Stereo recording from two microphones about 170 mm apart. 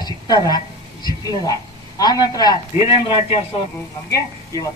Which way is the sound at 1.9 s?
20° left (ahead or behind).